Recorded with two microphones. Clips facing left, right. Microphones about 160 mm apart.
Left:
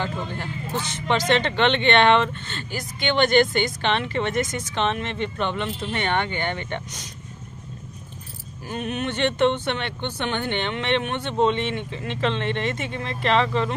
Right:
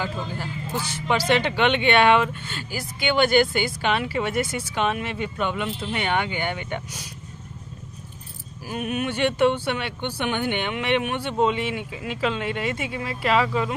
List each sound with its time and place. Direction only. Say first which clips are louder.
0.0 s speech: left 1 dB; 5° right (ahead or behind)
8.6 s speech: right 1 dB; 5° right (ahead or behind)